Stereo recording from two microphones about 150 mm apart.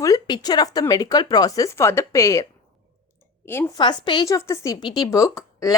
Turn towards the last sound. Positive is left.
turn(degrees=25)  # may be behind; listen again after turning